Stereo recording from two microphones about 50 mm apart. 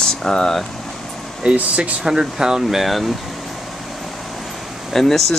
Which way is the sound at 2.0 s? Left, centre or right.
Centre.